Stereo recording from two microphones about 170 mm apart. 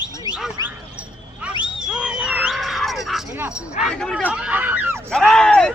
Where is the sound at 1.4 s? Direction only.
5° right (ahead or behind).